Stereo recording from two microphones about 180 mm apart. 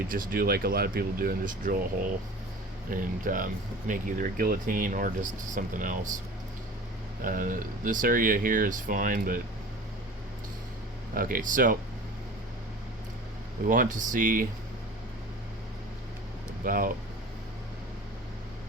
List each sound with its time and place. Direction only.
0.1 s speech: 50° right (ahead or behind)
2.9 s speech: 50° right (ahead or behind)
7.3 s speech: 50° right (ahead or behind)
11.1 s speech: 55° right (ahead or behind)
13.7 s speech: 45° right (ahead or behind)
16.6 s speech: 50° right (ahead or behind)